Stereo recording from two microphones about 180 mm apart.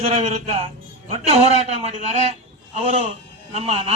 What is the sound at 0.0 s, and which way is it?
A man's voice, 35° right (ahead or behind).